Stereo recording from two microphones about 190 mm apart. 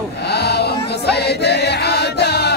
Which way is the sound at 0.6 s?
60° left (ahead or behind).